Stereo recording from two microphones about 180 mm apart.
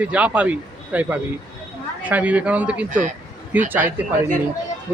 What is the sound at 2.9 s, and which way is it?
Speech, 45° right (ahead or behind).